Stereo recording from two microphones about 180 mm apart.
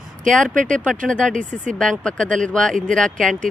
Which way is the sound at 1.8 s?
5° left (ahead or behind).